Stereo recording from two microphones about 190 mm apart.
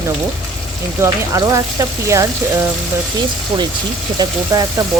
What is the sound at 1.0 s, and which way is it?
A woman's voice, 15° right (ahead or behind).